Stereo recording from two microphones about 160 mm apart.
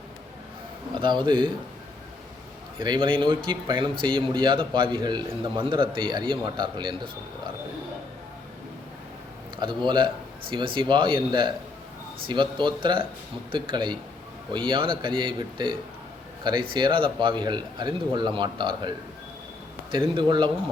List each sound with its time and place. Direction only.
0.9 s a man's voice: 30° right (ahead or behind)
2.7 s a man's voice: 30° right (ahead or behind)
9.6 s a man's voice: 30° right (ahead or behind)
19.9 s a man's voice: 30° right (ahead or behind)